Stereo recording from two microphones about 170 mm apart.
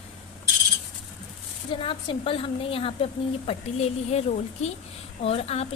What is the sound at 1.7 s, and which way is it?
A woman's voice, 30° left (ahead or behind).